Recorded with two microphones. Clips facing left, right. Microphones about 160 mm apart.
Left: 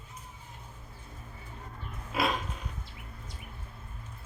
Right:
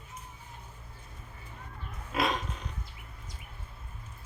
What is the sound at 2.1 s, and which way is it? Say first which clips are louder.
Pig: even; 5° left (ahead or behind).